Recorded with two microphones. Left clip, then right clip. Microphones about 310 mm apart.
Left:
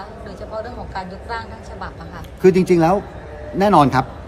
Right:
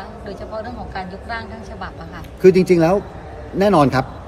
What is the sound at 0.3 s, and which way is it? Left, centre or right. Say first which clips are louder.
A woman's voice: right 1 dB; centre.